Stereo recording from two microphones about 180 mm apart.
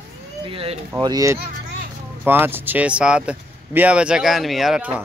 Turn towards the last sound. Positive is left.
turn(degrees=-5)  # may be behind; listen again after turning